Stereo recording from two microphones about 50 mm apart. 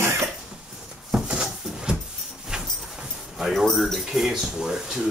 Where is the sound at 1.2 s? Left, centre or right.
Centre.